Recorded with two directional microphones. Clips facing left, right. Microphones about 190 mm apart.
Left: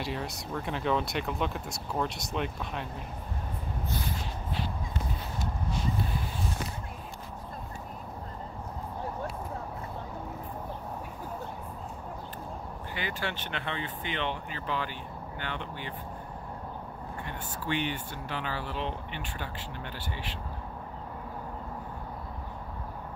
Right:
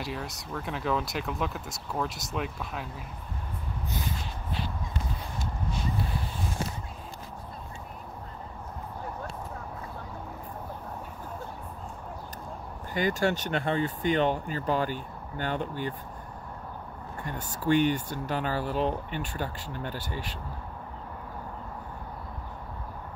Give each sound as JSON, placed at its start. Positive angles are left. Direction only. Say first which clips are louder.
{"t": 0.0, "sound": "speech", "louder": "left 1 dB", "side_deg": 0}
{"t": 12.9, "sound": "speech", "louder": "right 9 dB", "side_deg": -40}
{"t": 17.2, "sound": "speech", "louder": "right 6 dB", "side_deg": -45}